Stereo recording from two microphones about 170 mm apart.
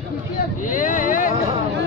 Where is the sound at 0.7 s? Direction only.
50° left (ahead or behind).